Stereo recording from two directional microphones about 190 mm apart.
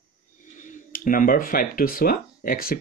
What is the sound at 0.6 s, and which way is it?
Speech, 45° left (ahead or behind).